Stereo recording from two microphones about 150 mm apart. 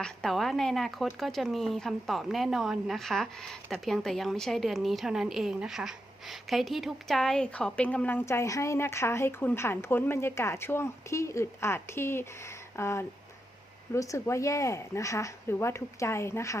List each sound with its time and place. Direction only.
0.0 s a woman's voice: 5° left (ahead or behind); by 16.6 s 20° left (ahead or behind)